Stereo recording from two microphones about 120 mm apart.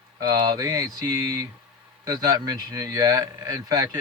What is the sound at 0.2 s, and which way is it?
Speech, 35° right (ahead or behind).